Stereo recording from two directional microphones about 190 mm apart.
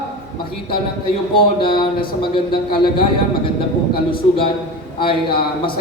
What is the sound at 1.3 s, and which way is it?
A man's voice, 25° left (ahead or behind).